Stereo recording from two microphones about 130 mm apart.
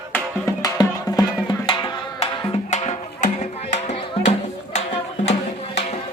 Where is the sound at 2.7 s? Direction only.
65° left (ahead or behind).